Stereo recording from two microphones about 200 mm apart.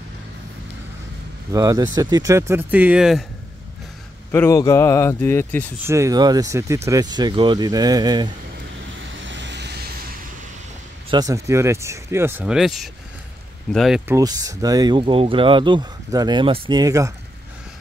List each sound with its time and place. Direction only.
1.5 s speech: 15° right (ahead or behind)
4.3 s speech: 15° left (ahead or behind)
5.9 s speech: 15° right (ahead or behind)
9.1 s vehicle: 70° right (ahead or behind)
11.1 s speech: 20° right (ahead or behind); by 14.1 s 5° right (ahead or behind)
14.1 s speech: 20° right (ahead or behind)